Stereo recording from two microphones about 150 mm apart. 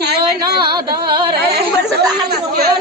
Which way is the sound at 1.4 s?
90° right.